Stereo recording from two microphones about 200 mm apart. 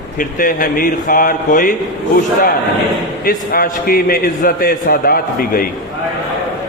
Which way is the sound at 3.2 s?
45° left (ahead or behind).